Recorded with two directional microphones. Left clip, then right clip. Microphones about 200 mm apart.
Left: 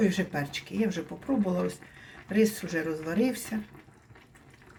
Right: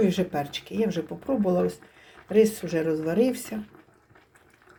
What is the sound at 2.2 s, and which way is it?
Speech, 30° right (ahead or behind).